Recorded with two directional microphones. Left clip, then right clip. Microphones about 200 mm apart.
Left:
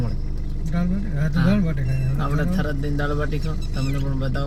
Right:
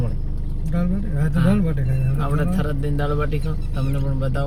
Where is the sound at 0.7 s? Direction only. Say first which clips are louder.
Right 1 dB; 35° right (ahead or behind).